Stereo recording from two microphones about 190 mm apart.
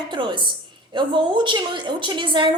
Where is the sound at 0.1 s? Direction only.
25° right (ahead or behind).